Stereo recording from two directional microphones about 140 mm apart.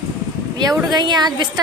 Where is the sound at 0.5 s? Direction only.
30° right (ahead or behind).